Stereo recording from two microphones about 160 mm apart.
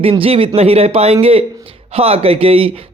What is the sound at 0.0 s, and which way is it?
Speech, 35° right (ahead or behind).